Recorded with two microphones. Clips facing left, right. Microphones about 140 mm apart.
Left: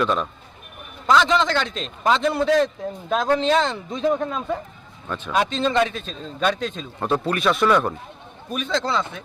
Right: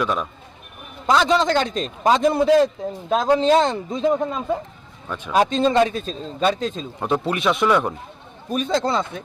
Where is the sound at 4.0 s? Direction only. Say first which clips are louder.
Right 1 dB; 15° right (ahead or behind).